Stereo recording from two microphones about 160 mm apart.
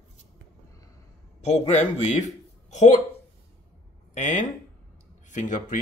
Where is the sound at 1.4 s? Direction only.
45° left (ahead or behind).